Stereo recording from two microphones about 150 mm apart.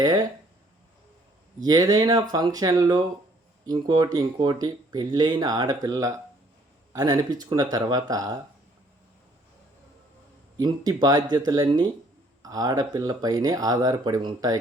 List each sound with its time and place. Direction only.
0.0 s speech: 25° right (ahead or behind)
1.6 s speech: 25° right (ahead or behind)
10.6 s speech: 25° right (ahead or behind)